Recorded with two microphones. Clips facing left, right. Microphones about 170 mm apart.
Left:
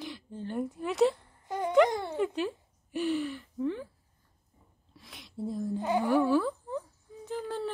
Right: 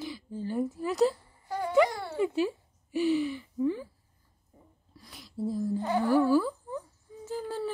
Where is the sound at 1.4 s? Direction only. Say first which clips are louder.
Even; 20° left (ahead or behind).